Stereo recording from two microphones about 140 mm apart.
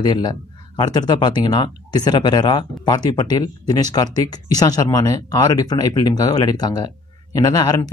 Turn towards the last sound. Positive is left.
turn(degrees=25)  # may be behind; listen again after turning